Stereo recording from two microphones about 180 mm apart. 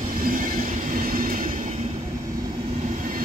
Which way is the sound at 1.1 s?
50° right (ahead or behind).